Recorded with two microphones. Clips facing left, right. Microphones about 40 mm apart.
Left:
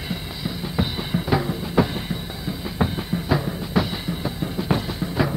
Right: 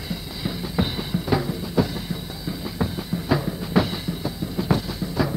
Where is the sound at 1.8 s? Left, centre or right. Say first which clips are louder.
Left 2 dB; left.